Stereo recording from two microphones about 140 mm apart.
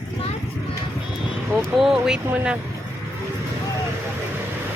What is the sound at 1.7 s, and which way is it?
Speech, 5° right (ahead or behind).